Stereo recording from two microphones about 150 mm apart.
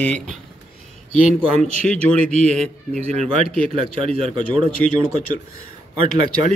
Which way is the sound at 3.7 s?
40° right (ahead or behind).